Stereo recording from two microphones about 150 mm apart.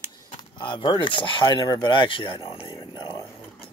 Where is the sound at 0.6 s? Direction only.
30° left (ahead or behind).